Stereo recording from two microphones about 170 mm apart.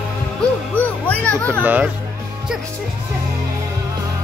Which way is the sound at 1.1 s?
10° left (ahead or behind).